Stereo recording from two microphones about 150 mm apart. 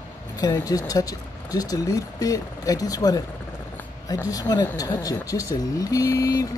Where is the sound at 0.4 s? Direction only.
25° left (ahead or behind).